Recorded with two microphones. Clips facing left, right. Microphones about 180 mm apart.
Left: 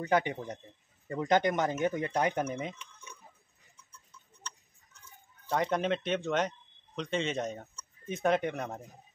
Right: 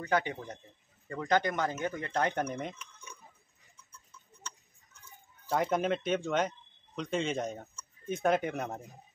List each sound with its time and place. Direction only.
0.0 s speech: 15° left (ahead or behind); by 2.9 s centre (ahead or behind)
5.5 s speech: 5° right (ahead or behind)